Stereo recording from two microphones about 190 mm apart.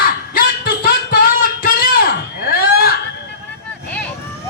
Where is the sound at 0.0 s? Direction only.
50° left (ahead or behind).